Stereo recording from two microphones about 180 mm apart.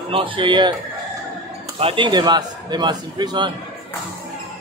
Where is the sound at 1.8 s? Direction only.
30° right (ahead or behind).